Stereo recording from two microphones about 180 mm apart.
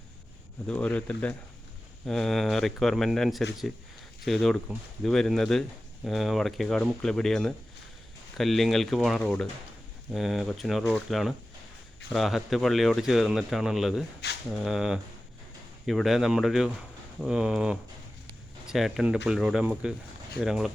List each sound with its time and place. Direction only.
0.7 s speech: 5° left (ahead or behind)
14.2 s speech: 65° left (ahead or behind)
14.6 s speech: 5° right (ahead or behind)